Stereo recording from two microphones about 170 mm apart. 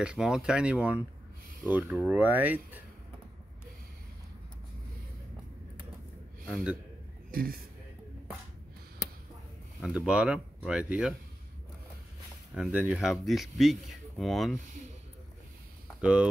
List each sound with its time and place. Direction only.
0.0 s speech: 5° right (ahead or behind)
6.5 s speech: 5° right (ahead or behind)
7.2 s a man's voice: 60° right (ahead or behind)
9.8 s speech: 5° right (ahead or behind)
12.5 s speech: 5° right (ahead or behind)
16.0 s speech: 5° right (ahead or behind)